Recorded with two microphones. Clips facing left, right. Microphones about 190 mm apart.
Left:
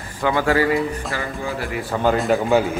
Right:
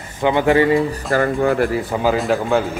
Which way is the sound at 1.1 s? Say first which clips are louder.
Right 10 dB; 60° right (ahead or behind).